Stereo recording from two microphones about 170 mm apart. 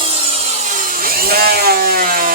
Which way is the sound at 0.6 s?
55° right (ahead or behind).